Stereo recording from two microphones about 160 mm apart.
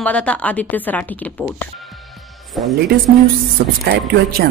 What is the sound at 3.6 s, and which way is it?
Speech, 90° right.